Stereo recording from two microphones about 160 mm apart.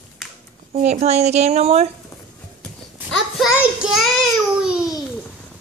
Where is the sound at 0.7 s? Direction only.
45° right (ahead or behind).